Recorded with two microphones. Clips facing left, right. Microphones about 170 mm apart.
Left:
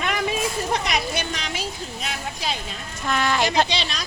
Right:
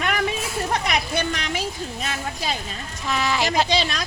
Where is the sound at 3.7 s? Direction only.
50° right (ahead or behind).